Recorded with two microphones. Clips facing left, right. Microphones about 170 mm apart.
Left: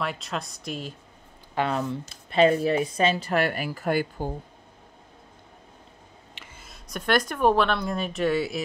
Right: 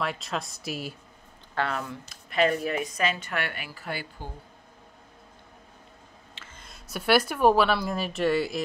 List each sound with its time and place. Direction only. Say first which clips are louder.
0.0 s speech: even; centre (ahead or behind)
1.5 s speech: left 4 dB; 20° left (ahead or behind); by 4.3 s 45° left (ahead or behind)
6.3 s a sound: left 1 dB; 15° left (ahead or behind)
6.6 s speech: even; 5° right (ahead or behind)